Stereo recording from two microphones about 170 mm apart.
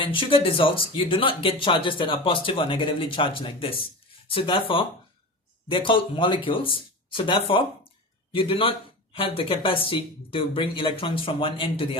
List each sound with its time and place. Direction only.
0.0 s a man's voice: 30° left (ahead or behind)